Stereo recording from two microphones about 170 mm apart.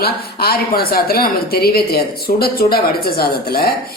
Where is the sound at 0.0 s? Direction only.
65° left (ahead or behind).